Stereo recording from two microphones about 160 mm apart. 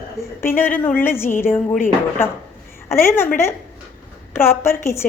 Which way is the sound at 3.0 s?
15° left (ahead or behind).